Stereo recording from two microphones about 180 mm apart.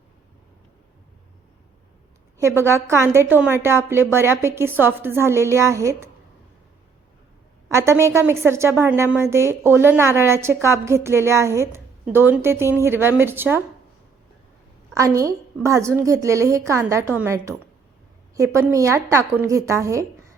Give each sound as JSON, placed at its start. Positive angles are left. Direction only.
{"t": 2.6, "sound": "a woman's voice", "side_deg": -15}
{"t": 7.7, "sound": "a woman's voice", "side_deg": -15}
{"t": 14.9, "sound": "a woman's voice", "side_deg": -20}